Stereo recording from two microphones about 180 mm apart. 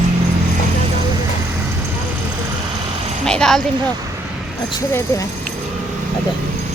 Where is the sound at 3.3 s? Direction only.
5° left (ahead or behind).